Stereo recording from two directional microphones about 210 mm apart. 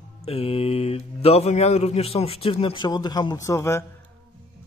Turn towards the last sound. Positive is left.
turn(degrees=15)  # may be behind; listen again after turning